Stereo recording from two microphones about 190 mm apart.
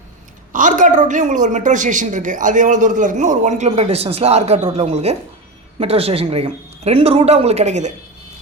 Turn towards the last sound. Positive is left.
turn(degrees=-40)  # may be behind; listen again after turning